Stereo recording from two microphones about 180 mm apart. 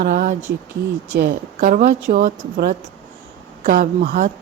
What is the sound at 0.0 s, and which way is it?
A woman's voice, 45° right (ahead or behind).